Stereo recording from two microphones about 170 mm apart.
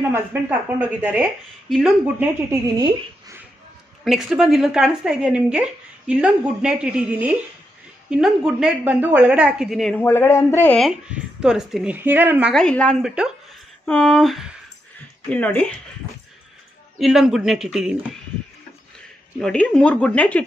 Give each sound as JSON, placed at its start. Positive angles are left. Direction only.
{"t": 0.1, "sound": "a woman's voice", "side_deg": -10}
{"t": 4.0, "sound": "a woman's voice", "side_deg": 0}
{"t": 9.9, "sound": "a woman's voice", "side_deg": 15}
{"t": 10.8, "sound": "a woman's voice", "side_deg": -5}
{"t": 12.5, "sound": "a woman's voice", "side_deg": 5}
{"t": 17.0, "sound": "a woman's voice", "side_deg": 0}
{"t": 19.4, "sound": "a woman's voice", "side_deg": 5}